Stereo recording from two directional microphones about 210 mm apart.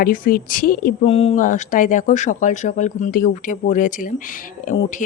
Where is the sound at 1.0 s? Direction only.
30° left (ahead or behind).